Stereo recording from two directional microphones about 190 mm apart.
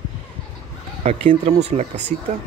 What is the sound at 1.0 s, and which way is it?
Speech, 35° right (ahead or behind).